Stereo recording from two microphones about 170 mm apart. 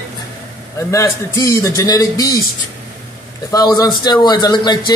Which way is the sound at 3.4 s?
20° left (ahead or behind).